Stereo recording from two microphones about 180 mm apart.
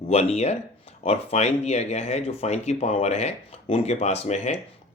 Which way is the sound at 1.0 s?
35° left (ahead or behind).